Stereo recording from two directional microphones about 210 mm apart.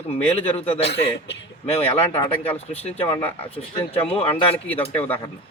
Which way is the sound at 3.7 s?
25° left (ahead or behind).